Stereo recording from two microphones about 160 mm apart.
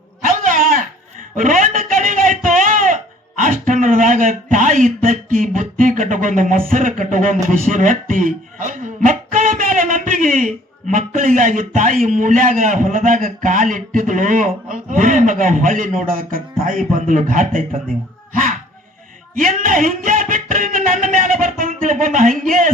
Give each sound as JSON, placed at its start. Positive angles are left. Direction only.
{"t": 0.3, "sound": "a sound", "side_deg": -55}
{"t": 1.4, "sound": "a man's voice", "side_deg": -55}
{"t": 19.4, "sound": "speech", "side_deg": -55}